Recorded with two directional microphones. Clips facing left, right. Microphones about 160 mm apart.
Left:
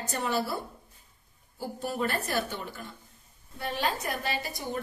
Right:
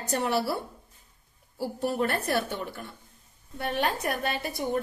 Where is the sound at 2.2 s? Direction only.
60° right (ahead or behind).